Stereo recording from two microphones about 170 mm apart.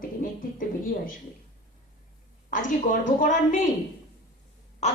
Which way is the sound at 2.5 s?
50° left (ahead or behind).